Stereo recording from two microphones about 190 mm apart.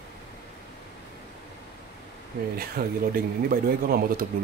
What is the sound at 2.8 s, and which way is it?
Speech, 55° right (ahead or behind).